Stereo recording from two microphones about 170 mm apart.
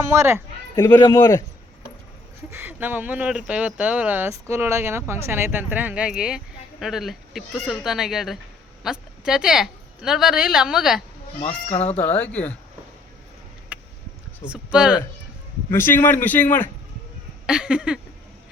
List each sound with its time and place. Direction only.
0.2 s speech: 15° right (ahead or behind)
0.8 s a man's voice: 10° left (ahead or behind)
2.5 s a woman's voice: 10° right (ahead or behind)
11.3 s speech: 40° left (ahead or behind)
11.9 s a man's voice: 10° left (ahead or behind)
13.7 s a sound: 10° right (ahead or behind)
14.4 s speech: 5° right (ahead or behind)
15.7 s a man's voice: 15° left (ahead or behind)
17.4 s a sound: 5° right (ahead or behind)